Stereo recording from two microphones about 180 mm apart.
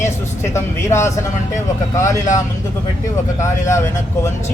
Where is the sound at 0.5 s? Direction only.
15° left (ahead or behind).